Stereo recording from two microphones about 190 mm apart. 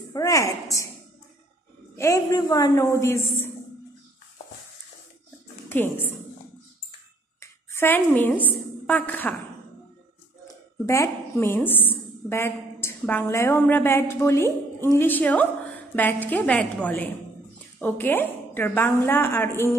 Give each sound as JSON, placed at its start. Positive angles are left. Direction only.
{"t": 0.1, "sound": "a woman's voice", "side_deg": 20}
{"t": 2.0, "sound": "a woman's voice", "side_deg": 15}
{"t": 5.7, "sound": "a woman's voice", "side_deg": 10}
{"t": 7.3, "sound": "a woman's voice", "side_deg": 10}
{"t": 10.9, "sound": "a woman's voice", "side_deg": 15}